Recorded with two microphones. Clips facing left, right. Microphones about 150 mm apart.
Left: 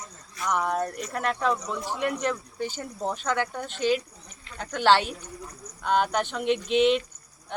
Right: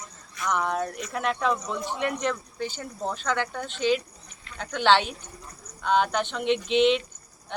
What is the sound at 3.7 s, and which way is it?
Speech, 45° left (ahead or behind).